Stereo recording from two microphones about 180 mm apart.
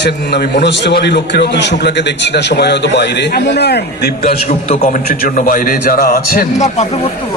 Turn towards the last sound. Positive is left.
turn(degrees=40)  # may be behind; listen again after turning